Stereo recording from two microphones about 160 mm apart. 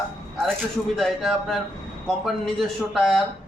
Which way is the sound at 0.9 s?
Centre (ahead or behind).